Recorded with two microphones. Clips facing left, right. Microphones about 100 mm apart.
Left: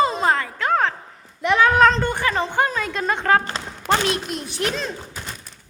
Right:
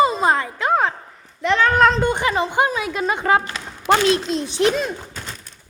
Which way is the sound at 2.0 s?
20° right (ahead or behind).